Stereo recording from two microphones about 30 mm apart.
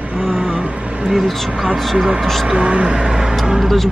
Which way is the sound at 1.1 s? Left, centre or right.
Centre.